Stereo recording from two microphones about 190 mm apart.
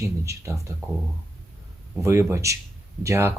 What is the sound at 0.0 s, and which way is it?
Speech, 15° right (ahead or behind).